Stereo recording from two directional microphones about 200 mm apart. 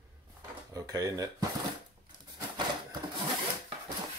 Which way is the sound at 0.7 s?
20° right (ahead or behind).